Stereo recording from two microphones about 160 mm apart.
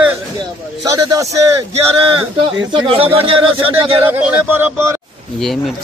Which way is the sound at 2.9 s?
35° right (ahead or behind).